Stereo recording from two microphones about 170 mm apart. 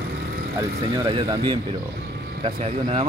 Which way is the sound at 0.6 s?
30° right (ahead or behind).